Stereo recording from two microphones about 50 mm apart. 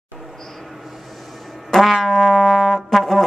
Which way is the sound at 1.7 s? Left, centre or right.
Centre.